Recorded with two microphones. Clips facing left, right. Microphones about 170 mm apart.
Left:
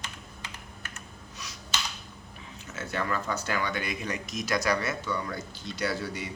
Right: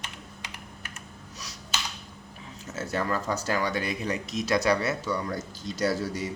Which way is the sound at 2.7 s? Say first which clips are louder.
Right 3 dB; 40° right (ahead or behind).